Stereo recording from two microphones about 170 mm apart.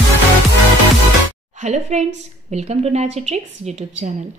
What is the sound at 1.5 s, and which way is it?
A woman's voice, 45° right (ahead or behind).